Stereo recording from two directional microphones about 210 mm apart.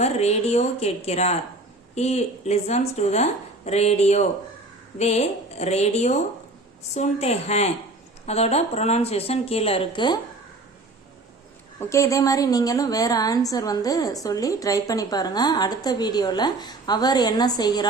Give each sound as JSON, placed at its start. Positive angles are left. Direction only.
{"t": 0.0, "sound": "a woman's voice", "side_deg": 30}
{"t": 11.8, "sound": "a woman's voice", "side_deg": 15}